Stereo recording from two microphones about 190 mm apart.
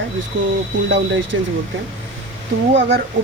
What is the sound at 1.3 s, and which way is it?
Speech, 90° right.